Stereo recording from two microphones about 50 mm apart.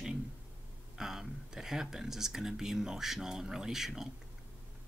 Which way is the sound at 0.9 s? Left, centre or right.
Centre.